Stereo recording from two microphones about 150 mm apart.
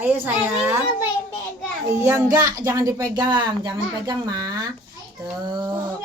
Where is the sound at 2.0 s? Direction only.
20° right (ahead or behind).